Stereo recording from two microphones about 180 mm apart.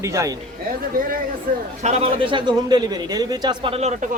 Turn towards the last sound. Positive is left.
turn(degrees=-40)  # may be behind; listen again after turning